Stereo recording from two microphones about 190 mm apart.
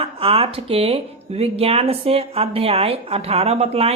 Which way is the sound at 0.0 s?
30° right (ahead or behind).